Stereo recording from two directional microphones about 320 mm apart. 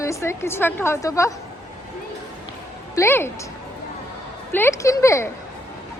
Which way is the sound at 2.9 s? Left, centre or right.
Centre.